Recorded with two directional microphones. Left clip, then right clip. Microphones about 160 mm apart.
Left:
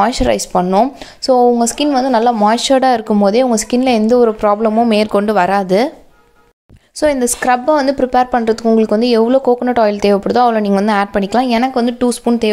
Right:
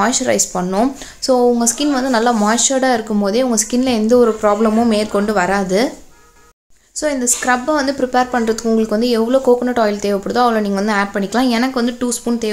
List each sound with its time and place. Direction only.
0.0 s speech: 45° left (ahead or behind)
7.0 s speech: 45° left (ahead or behind)